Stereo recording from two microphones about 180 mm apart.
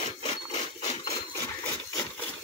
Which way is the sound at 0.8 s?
35° left (ahead or behind).